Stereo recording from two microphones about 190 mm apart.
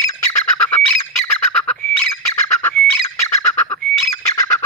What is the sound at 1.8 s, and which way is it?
Bird, 10° left (ahead or behind).